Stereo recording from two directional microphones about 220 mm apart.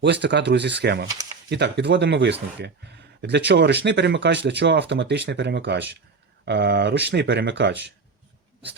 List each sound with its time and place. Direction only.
0.0 s speech: 50° right (ahead or behind)